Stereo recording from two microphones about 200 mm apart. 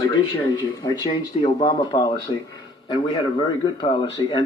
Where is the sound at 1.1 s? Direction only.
25° left (ahead or behind).